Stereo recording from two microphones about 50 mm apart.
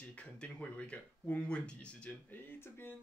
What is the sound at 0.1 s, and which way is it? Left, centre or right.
Speech, left.